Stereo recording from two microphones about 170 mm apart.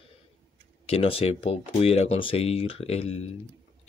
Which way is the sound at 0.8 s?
35° left (ahead or behind).